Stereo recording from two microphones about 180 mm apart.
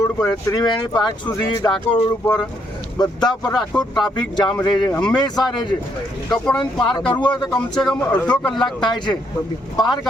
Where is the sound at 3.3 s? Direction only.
5° left (ahead or behind).